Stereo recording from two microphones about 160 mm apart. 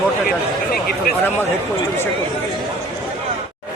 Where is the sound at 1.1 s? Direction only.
70° left (ahead or behind).